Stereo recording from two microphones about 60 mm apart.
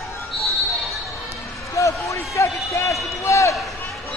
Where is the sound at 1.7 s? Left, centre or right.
Left.